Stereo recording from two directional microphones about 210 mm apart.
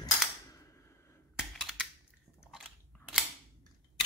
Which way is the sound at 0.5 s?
15° left (ahead or behind).